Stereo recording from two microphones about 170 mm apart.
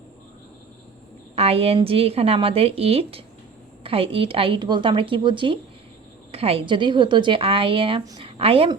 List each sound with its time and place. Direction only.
1.4 s a woman's voice: 35° right (ahead or behind)